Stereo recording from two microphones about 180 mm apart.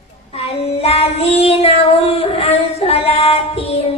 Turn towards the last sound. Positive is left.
turn(degrees=35)  # may be behind; listen again after turning